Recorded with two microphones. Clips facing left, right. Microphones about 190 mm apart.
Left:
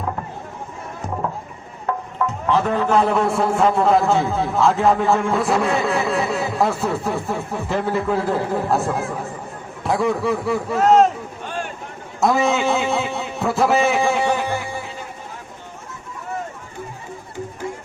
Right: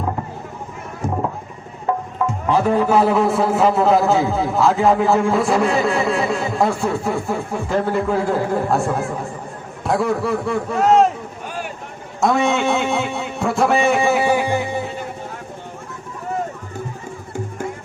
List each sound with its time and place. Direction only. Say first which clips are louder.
1.9 s music: right 3 dB; 15° right (ahead or behind)
2.5 s a man's voice: right 2 dB; 10° right (ahead or behind)